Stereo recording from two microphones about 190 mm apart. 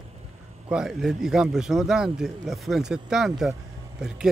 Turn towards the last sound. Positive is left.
turn(degrees=-5)  # may be behind; listen again after turning